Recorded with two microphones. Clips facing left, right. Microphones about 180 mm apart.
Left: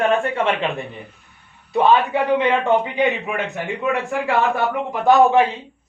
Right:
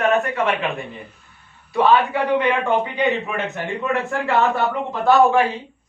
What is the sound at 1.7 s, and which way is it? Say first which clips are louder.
A man's voice: left 1 dB; 20° left (ahead or behind).